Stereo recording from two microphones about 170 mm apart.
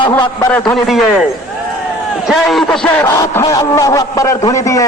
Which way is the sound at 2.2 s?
Centre (ahead or behind).